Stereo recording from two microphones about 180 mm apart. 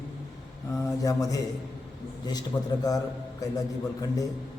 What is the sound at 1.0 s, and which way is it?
Speech, 20° left (ahead or behind).